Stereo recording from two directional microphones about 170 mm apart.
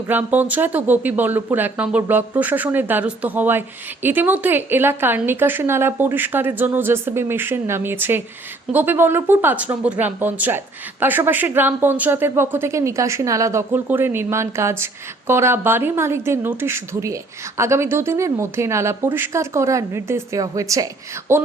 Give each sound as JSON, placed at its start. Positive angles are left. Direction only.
{"t": 0.1, "sound": "speech", "side_deg": -10}